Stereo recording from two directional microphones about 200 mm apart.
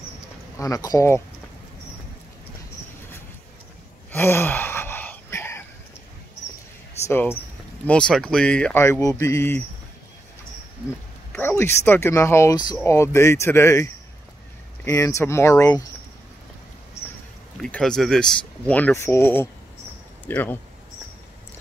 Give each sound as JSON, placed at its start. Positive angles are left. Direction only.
{"t": 0.6, "sound": "speech", "side_deg": 15}
{"t": 4.1, "sound": "gasp", "side_deg": 10}
{"t": 7.1, "sound": "speech", "side_deg": 10}
{"t": 11.3, "sound": "speech", "side_deg": 10}
{"t": 14.9, "sound": "speech", "side_deg": 15}
{"t": 17.6, "sound": "speech", "side_deg": 5}